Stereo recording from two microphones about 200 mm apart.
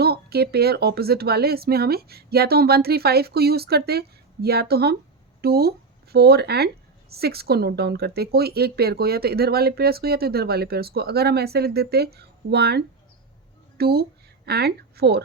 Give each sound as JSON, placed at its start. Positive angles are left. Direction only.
{"t": 0.0, "sound": "speech", "side_deg": -50}